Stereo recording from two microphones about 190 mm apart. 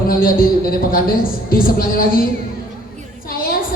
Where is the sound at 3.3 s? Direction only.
50° left (ahead or behind).